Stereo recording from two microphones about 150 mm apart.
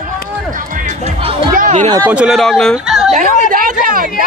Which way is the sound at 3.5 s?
60° right (ahead or behind).